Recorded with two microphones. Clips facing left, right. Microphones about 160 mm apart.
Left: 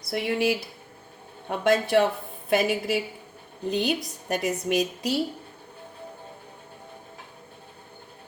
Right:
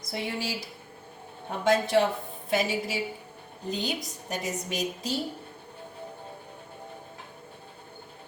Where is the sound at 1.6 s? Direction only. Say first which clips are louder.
Left 2 dB; 65° left (ahead or behind).